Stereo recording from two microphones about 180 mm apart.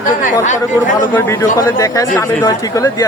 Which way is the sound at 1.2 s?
15° left (ahead or behind).